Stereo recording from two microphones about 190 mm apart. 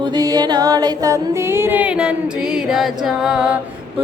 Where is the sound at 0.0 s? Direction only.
20° right (ahead or behind).